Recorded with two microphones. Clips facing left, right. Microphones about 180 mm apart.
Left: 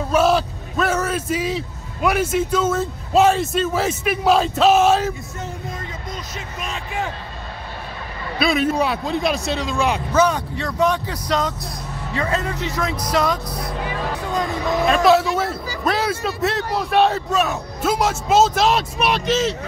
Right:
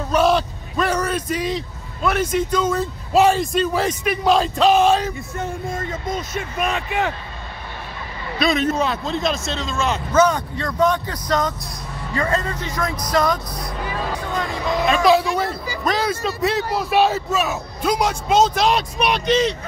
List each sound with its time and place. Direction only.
0.1 s a man's voice: 5° left (ahead or behind)
5.4 s speech: 50° right (ahead or behind); by 7.1 s 65° right (ahead or behind)
8.4 s a man's voice: 5° left (ahead or behind)
15.0 s speech: centre (ahead or behind)